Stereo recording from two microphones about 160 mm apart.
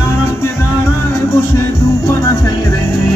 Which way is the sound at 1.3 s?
20° left (ahead or behind).